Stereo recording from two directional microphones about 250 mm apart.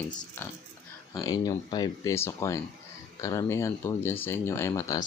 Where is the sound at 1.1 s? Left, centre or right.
Centre.